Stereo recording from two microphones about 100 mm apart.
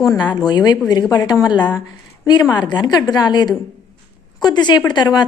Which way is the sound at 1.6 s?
15° left (ahead or behind).